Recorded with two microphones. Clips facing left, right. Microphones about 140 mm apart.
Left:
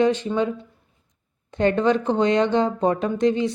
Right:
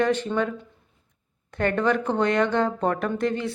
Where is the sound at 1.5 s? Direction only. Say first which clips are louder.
Left 4 dB; 20° left (ahead or behind).